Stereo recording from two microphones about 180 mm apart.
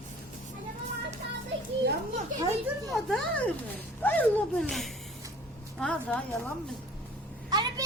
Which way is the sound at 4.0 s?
10° left (ahead or behind).